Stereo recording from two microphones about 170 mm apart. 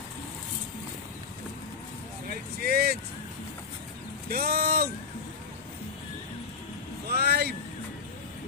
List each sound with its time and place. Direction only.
2.6 s vehicle: 65° right (ahead or behind)
4.3 s speech: 60° right (ahead or behind)
7.2 s vehicle: 70° right (ahead or behind)